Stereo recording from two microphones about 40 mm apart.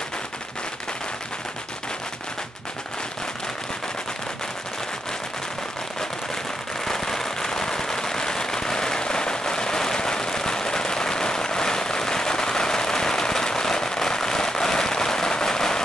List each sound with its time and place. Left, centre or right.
6.8 s firecracker: centre